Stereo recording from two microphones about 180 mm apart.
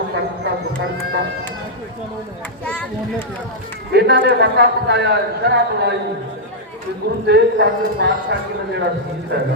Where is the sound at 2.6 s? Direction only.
5° left (ahead or behind).